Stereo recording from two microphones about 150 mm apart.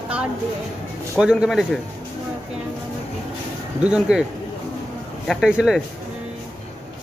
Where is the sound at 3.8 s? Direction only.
5° right (ahead or behind).